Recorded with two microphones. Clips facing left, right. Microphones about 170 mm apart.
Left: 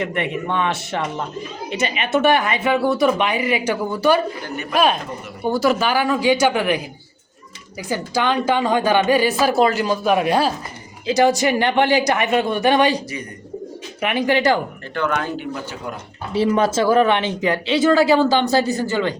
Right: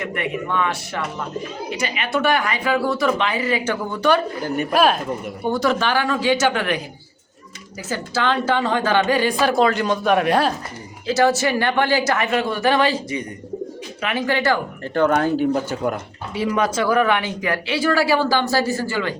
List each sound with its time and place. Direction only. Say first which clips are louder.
0.0 s a woman's voice: left 2 dB; 25° left (ahead or behind)
7.9 s a woman's voice: left 1 dB; 15° left (ahead or behind)
11.0 s speech: left 2 dB; 15° left (ahead or behind)
14.0 s a woman's voice: left 3 dB; 15° left (ahead or behind)
14.9 s speech: right 5 dB; 40° right (ahead or behind)
16.3 s speech: left 4 dB; 30° left (ahead or behind)